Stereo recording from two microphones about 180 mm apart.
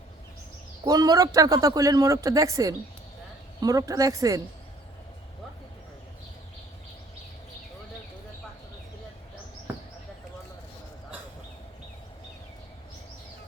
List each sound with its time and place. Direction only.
0.9 s speech: 20° right (ahead or behind)